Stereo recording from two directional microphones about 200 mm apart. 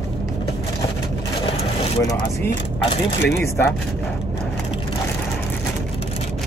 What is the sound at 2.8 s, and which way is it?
Speech, 25° left (ahead or behind).